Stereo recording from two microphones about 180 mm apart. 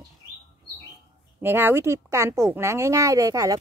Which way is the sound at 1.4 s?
10° right (ahead or behind).